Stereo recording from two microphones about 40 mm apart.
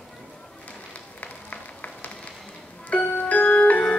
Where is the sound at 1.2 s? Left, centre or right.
Left.